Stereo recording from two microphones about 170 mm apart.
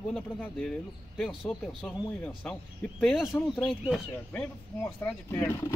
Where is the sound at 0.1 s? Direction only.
5° left (ahead or behind).